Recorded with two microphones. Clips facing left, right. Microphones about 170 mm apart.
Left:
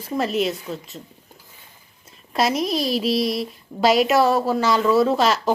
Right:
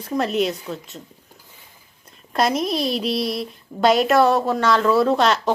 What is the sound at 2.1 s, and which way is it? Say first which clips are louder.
Speech: right 1 dB; centre (ahead or behind).